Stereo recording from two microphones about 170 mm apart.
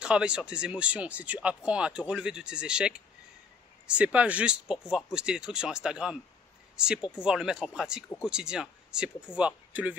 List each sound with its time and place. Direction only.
0.0 s speech: 5° right (ahead or behind)